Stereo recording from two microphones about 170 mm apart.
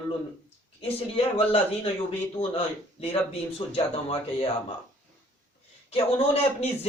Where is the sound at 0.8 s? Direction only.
35° left (ahead or behind).